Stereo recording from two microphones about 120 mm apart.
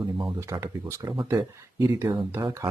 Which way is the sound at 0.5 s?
30° right (ahead or behind).